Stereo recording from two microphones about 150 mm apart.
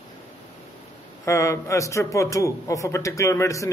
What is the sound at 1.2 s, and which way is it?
A man's voice, 20° left (ahead or behind).